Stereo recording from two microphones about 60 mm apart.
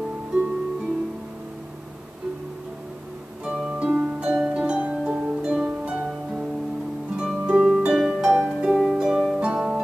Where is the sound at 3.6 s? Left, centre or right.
Right.